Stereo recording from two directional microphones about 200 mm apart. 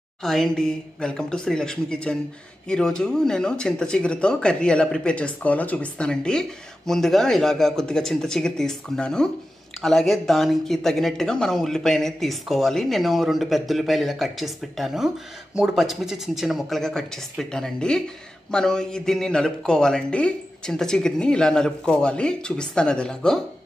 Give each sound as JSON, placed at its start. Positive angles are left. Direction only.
{"t": 0.2, "sound": "speech", "side_deg": 0}